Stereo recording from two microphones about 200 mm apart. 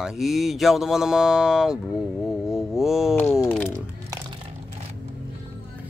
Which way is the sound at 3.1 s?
10° left (ahead or behind).